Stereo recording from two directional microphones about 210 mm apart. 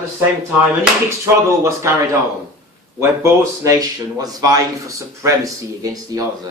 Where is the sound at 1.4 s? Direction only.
15° right (ahead or behind).